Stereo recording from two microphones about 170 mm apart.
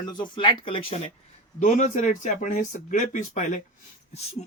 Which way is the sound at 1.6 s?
45° left (ahead or behind).